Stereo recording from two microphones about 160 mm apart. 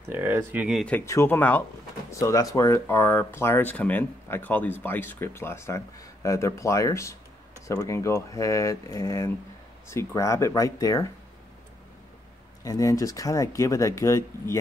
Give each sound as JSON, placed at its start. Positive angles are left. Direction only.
{"t": 0.1, "sound": "speech", "side_deg": -15}
{"t": 0.7, "sound": "speech", "side_deg": 0}
{"t": 0.9, "sound": "speech", "side_deg": 15}
{"t": 12.6, "sound": "speech", "side_deg": 20}